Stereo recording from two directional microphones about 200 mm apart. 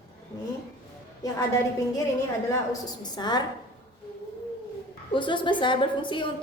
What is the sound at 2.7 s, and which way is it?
Speech, 20° left (ahead or behind).